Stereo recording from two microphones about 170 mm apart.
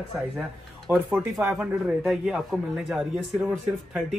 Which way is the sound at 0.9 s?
10° right (ahead or behind).